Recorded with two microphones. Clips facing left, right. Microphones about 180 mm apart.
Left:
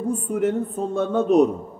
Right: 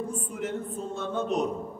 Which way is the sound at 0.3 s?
60° left (ahead or behind).